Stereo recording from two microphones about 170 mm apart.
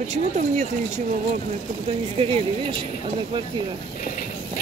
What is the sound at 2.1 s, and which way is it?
Speech, 30° right (ahead or behind).